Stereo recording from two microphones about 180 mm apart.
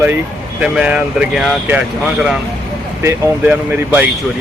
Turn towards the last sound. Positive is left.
turn(degrees=-5)  # may be behind; listen again after turning